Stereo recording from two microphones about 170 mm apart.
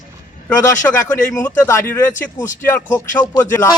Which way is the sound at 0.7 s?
10° left (ahead or behind).